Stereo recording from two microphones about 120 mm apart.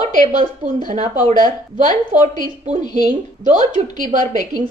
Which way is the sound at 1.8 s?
80° right.